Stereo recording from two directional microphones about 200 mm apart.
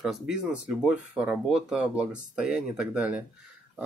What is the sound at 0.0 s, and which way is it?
Speech, 5° right (ahead or behind).